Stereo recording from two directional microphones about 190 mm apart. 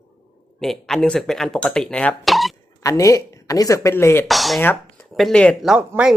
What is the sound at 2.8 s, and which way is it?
A man's voice, 15° left (ahead or behind).